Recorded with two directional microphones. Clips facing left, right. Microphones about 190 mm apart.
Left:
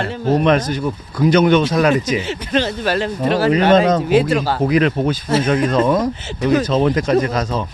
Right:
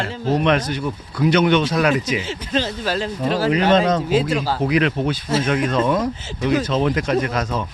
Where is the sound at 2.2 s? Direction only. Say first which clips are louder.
Left 4 dB; 65° left (ahead or behind).